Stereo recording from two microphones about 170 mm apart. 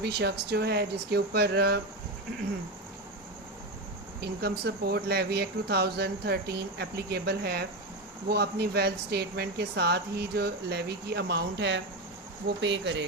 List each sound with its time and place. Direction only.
0.0 s speech: 80° right
4.4 s speech: 70° right (ahead or behind); by 13.1 s 90° right